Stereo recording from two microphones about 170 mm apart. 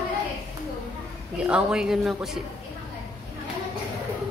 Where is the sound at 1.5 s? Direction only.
5° right (ahead or behind).